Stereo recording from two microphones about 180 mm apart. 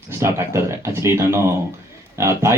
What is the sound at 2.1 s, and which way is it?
Speech, 15° right (ahead or behind).